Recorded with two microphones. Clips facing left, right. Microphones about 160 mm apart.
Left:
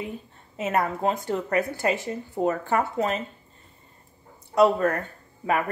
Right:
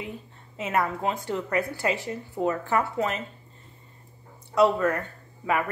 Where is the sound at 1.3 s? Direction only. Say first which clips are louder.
Left 2 dB; 55° left (ahead or behind).